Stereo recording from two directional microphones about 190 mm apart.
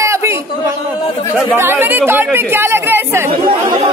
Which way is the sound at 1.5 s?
10° right (ahead or behind).